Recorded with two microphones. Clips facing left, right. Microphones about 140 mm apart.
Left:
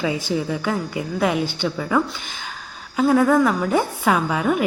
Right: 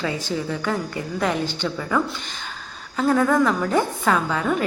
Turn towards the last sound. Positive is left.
turn(degrees=10)  # may be behind; listen again after turning